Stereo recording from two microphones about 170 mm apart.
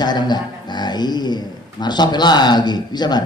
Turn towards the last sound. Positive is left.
turn(degrees=25)  # may be behind; listen again after turning